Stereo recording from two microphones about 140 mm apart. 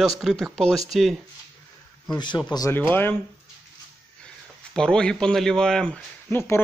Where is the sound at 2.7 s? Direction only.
15° left (ahead or behind).